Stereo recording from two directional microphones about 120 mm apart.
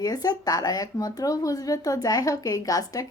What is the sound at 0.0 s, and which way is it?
A woman's voice, 35° left (ahead or behind).